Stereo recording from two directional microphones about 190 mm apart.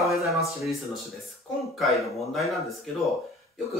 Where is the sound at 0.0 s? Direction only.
Centre (ahead or behind).